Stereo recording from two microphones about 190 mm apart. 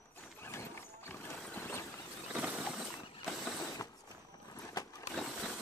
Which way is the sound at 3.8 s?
15° left (ahead or behind).